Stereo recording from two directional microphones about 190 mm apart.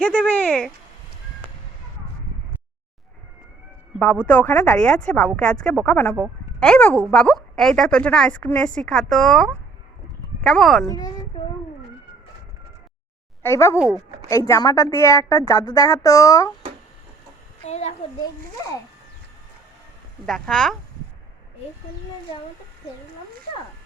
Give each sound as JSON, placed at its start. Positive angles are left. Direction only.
{"t": 0.0, "sound": "a sound", "side_deg": 5}
{"t": 3.9, "sound": "a woman's voice", "side_deg": 5}
{"t": 10.8, "sound": "a child's voice", "side_deg": 20}
{"t": 13.4, "sound": "a woman's voice", "side_deg": 15}
{"t": 13.7, "sound": "speech", "side_deg": -5}
{"t": 14.3, "sound": "a woman's voice", "side_deg": 15}
{"t": 17.7, "sound": "a child's voice", "side_deg": 35}
{"t": 20.2, "sound": "speech", "side_deg": 5}